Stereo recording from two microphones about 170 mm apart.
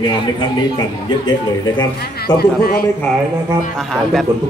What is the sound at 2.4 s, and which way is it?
Speech, 65° left (ahead or behind).